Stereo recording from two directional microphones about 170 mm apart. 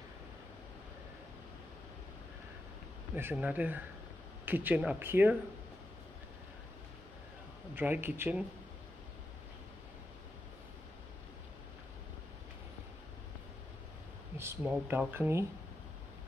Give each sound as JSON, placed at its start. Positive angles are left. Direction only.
{"t": 3.2, "sound": "speech", "side_deg": -10}
{"t": 7.7, "sound": "speech", "side_deg": -10}
{"t": 14.4, "sound": "speech", "side_deg": -10}